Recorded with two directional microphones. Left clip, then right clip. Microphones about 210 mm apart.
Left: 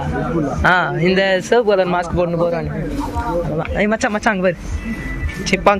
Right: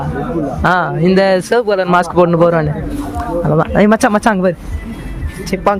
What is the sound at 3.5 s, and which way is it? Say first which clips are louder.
Speech: right 7 dB; 40° right (ahead or behind).